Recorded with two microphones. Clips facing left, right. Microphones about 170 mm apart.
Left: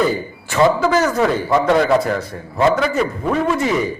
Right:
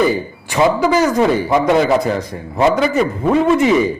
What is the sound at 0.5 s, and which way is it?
A man's voice, 10° right (ahead or behind).